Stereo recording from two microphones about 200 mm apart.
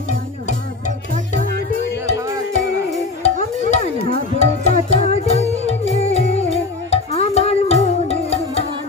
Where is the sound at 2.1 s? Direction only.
15° right (ahead or behind).